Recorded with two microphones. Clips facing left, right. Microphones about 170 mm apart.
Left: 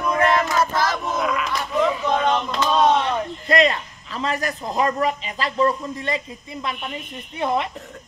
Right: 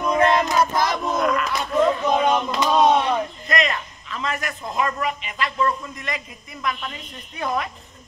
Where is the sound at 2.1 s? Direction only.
10° right (ahead or behind).